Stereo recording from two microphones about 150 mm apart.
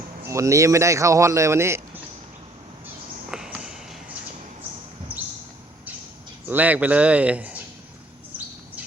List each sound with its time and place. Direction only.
0.2 s speech: 20° right (ahead or behind)
3.3 s a sound: 5° right (ahead or behind)
6.5 s speech: 10° right (ahead or behind)